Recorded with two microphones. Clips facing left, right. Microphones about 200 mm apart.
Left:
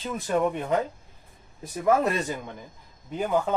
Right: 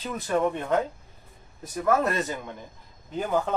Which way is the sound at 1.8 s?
15° left (ahead or behind).